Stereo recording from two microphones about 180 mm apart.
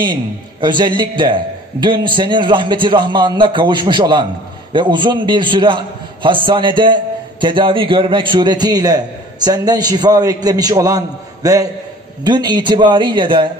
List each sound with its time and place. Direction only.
0.0 s a man's voice: 25° right (ahead or behind)